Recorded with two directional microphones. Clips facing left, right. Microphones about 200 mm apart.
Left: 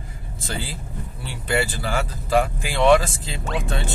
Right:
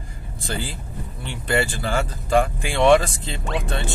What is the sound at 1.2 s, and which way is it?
Speech, 5° left (ahead or behind).